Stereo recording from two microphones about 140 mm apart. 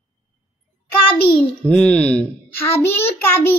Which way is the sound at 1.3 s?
5° left (ahead or behind).